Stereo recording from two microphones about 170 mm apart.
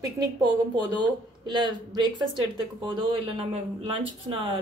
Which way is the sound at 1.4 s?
25° right (ahead or behind).